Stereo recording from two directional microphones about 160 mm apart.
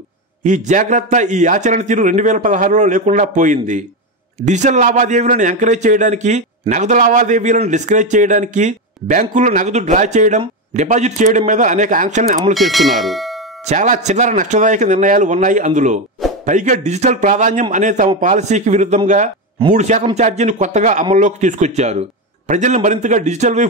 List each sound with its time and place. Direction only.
0.4 s a man's voice: 50° right (ahead or behind)
12.5 s bell: centre (ahead or behind)
13.7 s a man's voice: 50° right (ahead or behind)